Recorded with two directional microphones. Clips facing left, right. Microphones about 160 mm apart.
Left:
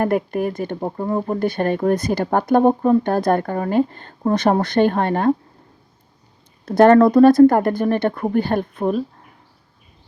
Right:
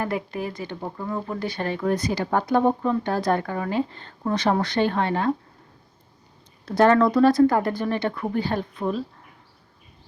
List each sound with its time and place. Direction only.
0.0 s speech: 50° left (ahead or behind)
1.4 s speech: 50° left (ahead or behind)
6.7 s speech: 50° left (ahead or behind)